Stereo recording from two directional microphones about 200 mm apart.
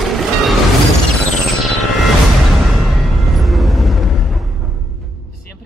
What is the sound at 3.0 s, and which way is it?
Music, centre (ahead or behind).